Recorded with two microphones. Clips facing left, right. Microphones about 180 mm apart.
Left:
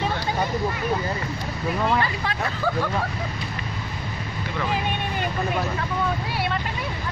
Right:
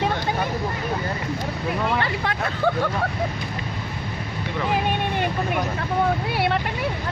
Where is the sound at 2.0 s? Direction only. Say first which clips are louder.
Right 1 dB; 60° right (ahead or behind).